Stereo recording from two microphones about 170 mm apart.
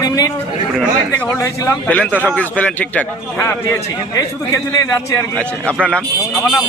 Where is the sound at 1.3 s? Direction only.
15° left (ahead or behind).